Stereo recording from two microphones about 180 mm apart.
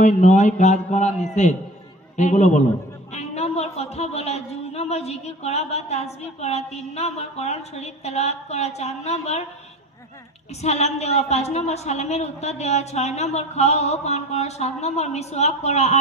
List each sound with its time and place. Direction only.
0.0 s a man's voice: 45° left (ahead or behind)
10.6 s a man's voice: 35° left (ahead or behind)